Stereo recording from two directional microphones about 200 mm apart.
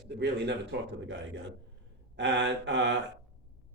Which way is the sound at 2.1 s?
60° right (ahead or behind).